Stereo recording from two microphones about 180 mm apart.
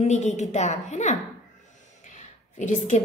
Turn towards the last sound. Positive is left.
turn(degrees=40)  # may be behind; listen again after turning